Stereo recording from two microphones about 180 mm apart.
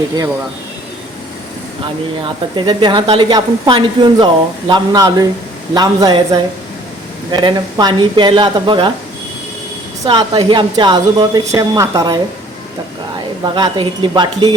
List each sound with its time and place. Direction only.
2.2 s speech: 25° right (ahead or behind)
10.1 s speech: 25° right (ahead or behind)
13.4 s speech: 25° right (ahead or behind)